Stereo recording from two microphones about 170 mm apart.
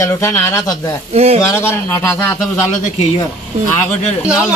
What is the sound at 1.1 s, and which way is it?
Speech, 40° right (ahead or behind).